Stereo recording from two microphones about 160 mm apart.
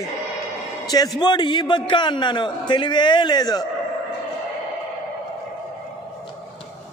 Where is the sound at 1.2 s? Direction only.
25° left (ahead or behind).